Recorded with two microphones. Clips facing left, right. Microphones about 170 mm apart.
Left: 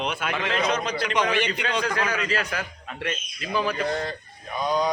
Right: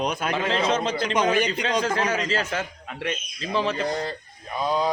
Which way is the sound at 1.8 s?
25° right (ahead or behind).